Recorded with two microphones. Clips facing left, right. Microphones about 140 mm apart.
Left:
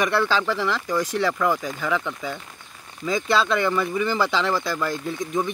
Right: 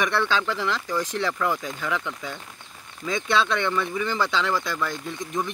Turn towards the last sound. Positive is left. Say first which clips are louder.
# left 4 dB
turn(degrees=0)  # may be behind; listen again after turning